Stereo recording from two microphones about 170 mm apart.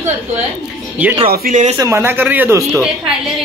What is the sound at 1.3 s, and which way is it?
Speech, 50° right (ahead or behind).